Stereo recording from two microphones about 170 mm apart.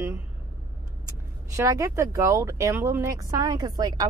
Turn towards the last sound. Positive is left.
turn(degrees=-20)  # may be behind; listen again after turning